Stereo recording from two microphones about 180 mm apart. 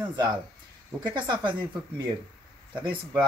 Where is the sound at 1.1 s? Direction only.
25° right (ahead or behind).